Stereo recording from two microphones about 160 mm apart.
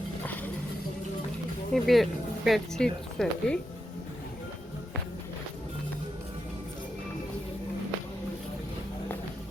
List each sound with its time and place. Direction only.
1.7 s speech: centre (ahead or behind)